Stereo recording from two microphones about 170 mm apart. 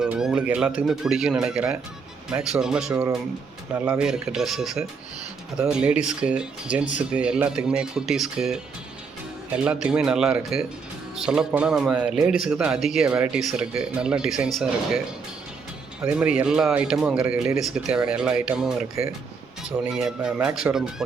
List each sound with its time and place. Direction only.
0.0 s speech: 5° right (ahead or behind)
9.8 s speech: 5° right (ahead or behind)